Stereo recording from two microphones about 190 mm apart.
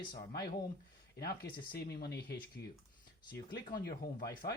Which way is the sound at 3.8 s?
55° left (ahead or behind).